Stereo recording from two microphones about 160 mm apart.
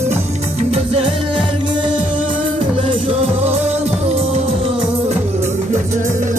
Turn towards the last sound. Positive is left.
turn(degrees=-50)  # may be behind; listen again after turning